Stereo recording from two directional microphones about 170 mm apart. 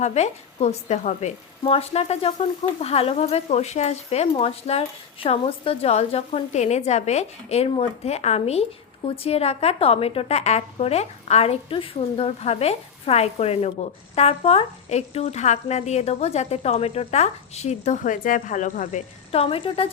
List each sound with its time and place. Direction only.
0.0 s speech: 40° left (ahead or behind)